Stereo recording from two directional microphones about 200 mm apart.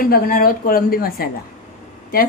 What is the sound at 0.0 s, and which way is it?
A woman's voice, 45° left (ahead or behind).